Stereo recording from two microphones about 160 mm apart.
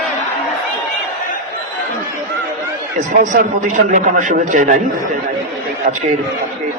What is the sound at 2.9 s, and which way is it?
A man's voice, 55° right (ahead or behind).